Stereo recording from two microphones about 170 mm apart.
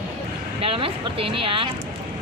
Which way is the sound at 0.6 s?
35° right (ahead or behind).